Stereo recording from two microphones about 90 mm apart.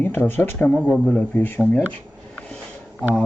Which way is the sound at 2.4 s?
10° left (ahead or behind).